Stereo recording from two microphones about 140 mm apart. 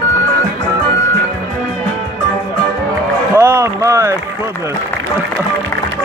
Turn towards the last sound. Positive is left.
turn(degrees=-20)  # may be behind; listen again after turning